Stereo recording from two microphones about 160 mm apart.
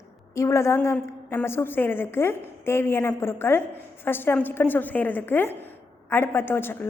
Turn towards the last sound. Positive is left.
turn(degrees=15)  # may be behind; listen again after turning